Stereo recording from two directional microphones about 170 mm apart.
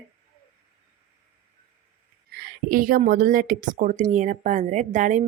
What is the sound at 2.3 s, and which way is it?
Speech, 55° right (ahead or behind).